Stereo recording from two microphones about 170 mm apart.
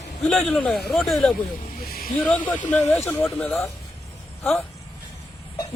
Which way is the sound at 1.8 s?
60° left (ahead or behind).